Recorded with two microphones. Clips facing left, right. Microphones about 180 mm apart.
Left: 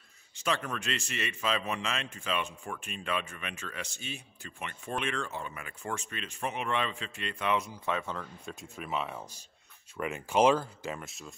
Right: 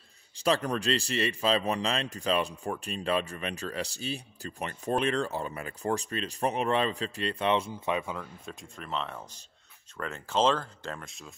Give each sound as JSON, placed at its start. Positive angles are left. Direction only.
{"t": 0.4, "sound": "a man's voice", "side_deg": -35}
{"t": 8.5, "sound": "speech", "side_deg": 5}